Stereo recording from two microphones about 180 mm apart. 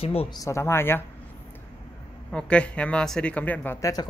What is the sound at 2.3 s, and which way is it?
Speech, 5° left (ahead or behind).